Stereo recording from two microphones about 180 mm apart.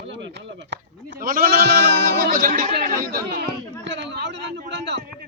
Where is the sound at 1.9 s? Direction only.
65° right (ahead or behind).